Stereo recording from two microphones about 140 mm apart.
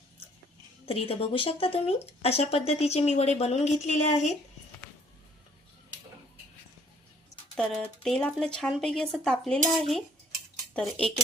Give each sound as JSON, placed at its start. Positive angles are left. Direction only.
{"t": 0.9, "sound": "speech", "side_deg": 40}
{"t": 7.5, "sound": "speech", "side_deg": 5}